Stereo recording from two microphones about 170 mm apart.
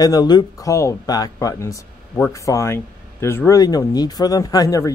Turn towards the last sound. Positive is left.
turn(degrees=20)  # may be behind; listen again after turning